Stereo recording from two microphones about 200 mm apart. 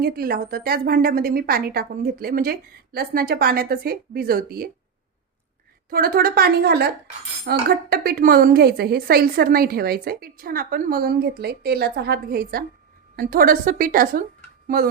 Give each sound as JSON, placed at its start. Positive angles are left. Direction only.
{"t": 0.0, "sound": "a woman's voice", "side_deg": -50}
{"t": 5.9, "sound": "a woman's voice", "side_deg": -45}